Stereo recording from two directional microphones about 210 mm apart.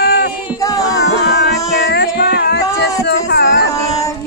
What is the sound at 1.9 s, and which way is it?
Music, 50° left (ahead or behind).